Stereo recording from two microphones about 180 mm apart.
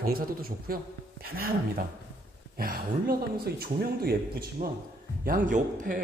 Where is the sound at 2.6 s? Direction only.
55° right (ahead or behind).